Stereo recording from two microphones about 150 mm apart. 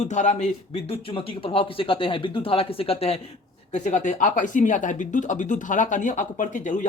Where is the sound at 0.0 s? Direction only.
55° left (ahead or behind).